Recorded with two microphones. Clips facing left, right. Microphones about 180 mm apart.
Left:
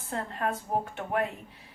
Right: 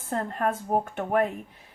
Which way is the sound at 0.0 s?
50° right (ahead or behind).